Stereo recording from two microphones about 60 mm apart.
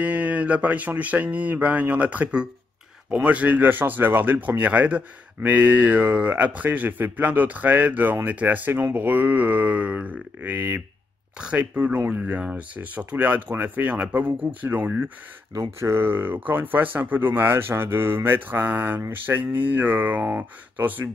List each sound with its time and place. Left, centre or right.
0.0 s speech: right
11.3 s speech: centre
15.8 s speech: right